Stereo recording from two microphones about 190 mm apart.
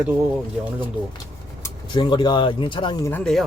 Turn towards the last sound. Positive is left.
turn(degrees=5)  # may be behind; listen again after turning